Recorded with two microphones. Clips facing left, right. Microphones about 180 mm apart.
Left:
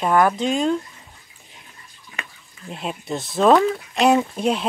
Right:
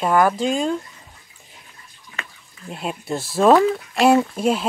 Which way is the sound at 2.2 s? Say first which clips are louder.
Even; 15° left (ahead or behind).